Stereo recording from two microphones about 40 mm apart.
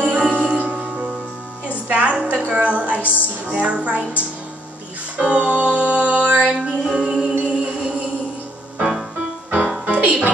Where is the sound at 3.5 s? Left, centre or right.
Right.